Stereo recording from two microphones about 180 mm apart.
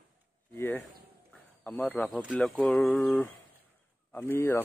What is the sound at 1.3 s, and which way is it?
Snake, 10° left (ahead or behind).